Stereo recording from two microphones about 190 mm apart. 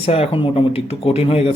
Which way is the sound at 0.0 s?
30° left (ahead or behind).